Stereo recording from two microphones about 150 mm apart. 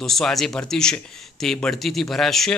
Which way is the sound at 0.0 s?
Centre (ahead or behind).